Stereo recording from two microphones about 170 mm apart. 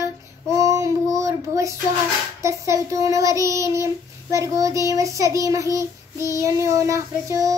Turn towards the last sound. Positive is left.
turn(degrees=-20)  # may be behind; listen again after turning